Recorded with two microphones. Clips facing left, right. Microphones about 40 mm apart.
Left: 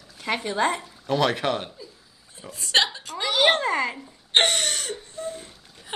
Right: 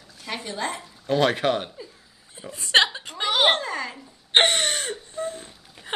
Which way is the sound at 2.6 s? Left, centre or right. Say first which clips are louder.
Right 3 dB; right.